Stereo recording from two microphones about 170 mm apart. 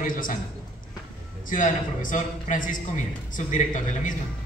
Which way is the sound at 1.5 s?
50° left (ahead or behind).